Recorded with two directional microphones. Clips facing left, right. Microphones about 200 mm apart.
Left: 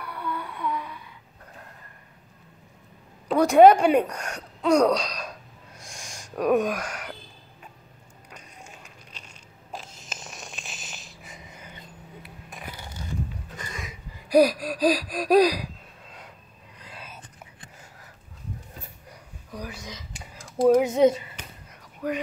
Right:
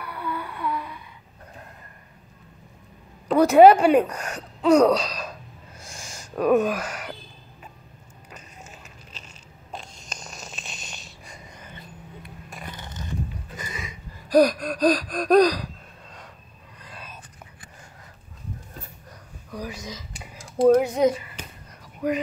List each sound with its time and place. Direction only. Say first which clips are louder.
0.0 s a sound: right 1 dB; 5° right (ahead or behind)
3.3 s gasp: right 2 dB; 5° right (ahead or behind)
6.3 s speech: right 2 dB; centre (ahead or behind)
8.3 s a sound: right 2 dB; 5° right (ahead or behind)
13.6 s a sound: right 2 dB; 5° right (ahead or behind)
14.1 s gasp: right 1 dB; 10° left (ahead or behind)
16.8 s whispering: right 1 dB; 10° left (ahead or behind)
19.5 s speech: right 3 dB; centre (ahead or behind)
20.8 s speech: left 2 dB; 25° left (ahead or behind)
22.0 s speech: right 4 dB; 15° right (ahead or behind)